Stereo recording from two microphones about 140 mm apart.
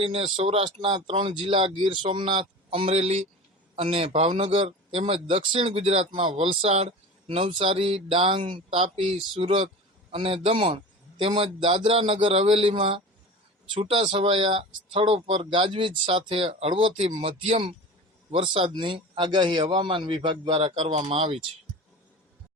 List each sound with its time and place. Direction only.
0.0 s speech: 40° right (ahead or behind)